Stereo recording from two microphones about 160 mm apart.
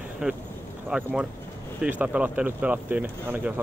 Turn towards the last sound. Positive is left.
turn(degrees=-10)  # may be behind; listen again after turning